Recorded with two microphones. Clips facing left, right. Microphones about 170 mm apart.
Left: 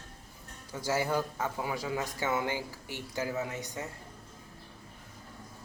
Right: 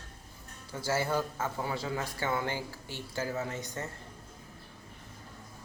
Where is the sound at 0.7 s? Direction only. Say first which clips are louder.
Even; 15° left (ahead or behind).